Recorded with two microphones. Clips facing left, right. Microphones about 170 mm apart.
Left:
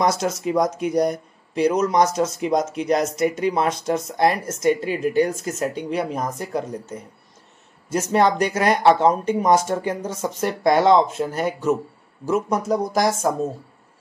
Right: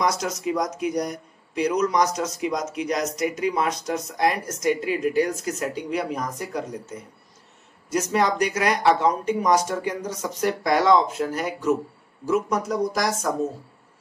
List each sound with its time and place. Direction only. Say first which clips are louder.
0.0 s speech: left 3 dB; 25° left (ahead or behind)